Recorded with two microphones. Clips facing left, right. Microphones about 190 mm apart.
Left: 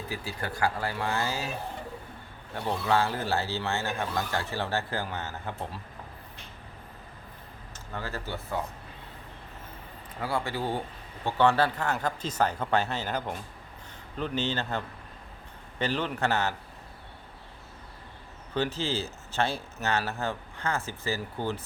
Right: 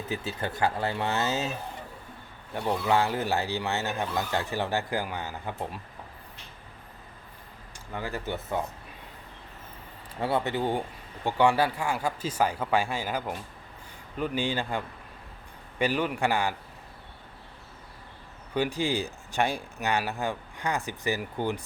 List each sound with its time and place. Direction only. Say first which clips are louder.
0.1 s speech: right 4 dB; 20° right (ahead or behind)
2.6 s speech: right 1 dB; 15° right (ahead or behind)
7.9 s speech: right 3 dB; 15° right (ahead or behind)
10.2 s speech: right 4 dB; 25° right (ahead or behind)
18.5 s speech: right 2 dB; 15° right (ahead or behind)